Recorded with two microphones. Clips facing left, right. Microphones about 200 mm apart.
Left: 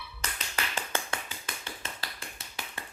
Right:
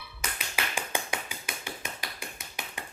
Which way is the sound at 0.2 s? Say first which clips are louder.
Right 2 dB; 10° right (ahead or behind).